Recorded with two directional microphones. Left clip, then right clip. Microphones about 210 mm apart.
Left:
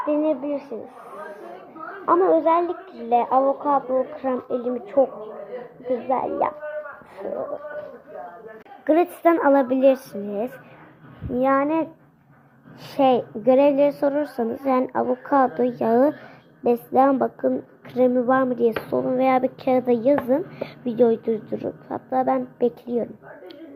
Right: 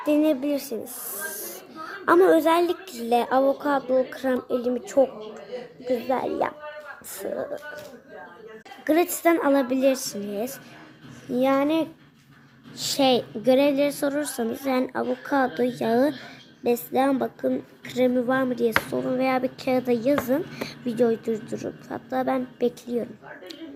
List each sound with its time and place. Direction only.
0.0 s speech: 30° right (ahead or behind)
2.0 s a woman's voice: 35° right (ahead or behind); by 5.0 s 20° right (ahead or behind)
6.1 s a child's voice: 15° right (ahead or behind)
8.8 s a woman's voice: 5° right (ahead or behind)
11.3 s a child's voice: 15° right (ahead or behind)